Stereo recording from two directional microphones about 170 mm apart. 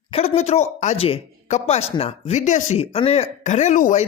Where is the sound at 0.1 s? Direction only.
35° left (ahead or behind).